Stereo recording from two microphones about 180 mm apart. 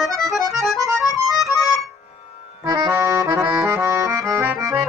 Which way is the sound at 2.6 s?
20° right (ahead or behind).